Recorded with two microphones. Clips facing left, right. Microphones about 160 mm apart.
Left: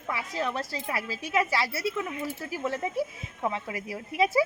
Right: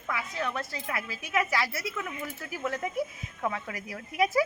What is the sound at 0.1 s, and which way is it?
A woman's voice, 35° left (ahead or behind).